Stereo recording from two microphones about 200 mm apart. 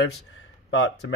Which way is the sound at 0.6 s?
75° left (ahead or behind).